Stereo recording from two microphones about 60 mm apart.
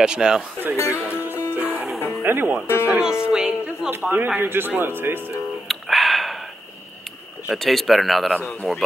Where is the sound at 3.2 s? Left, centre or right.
Centre.